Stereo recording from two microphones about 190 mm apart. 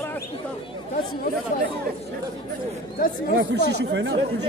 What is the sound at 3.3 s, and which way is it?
Speech, 65° right (ahead or behind).